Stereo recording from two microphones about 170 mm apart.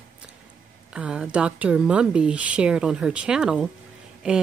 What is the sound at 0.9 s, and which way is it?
Speech, 5° right (ahead or behind).